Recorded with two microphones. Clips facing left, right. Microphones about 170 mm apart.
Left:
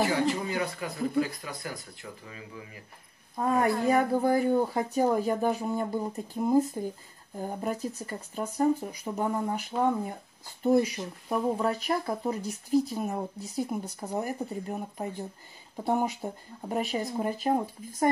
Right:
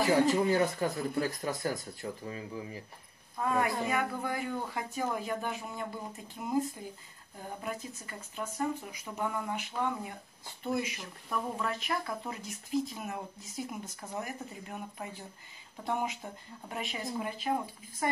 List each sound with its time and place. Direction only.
0.3 s speech: 40° right (ahead or behind)
3.3 s speech: 40° left (ahead or behind)
7.6 s speech: 40° left (ahead or behind)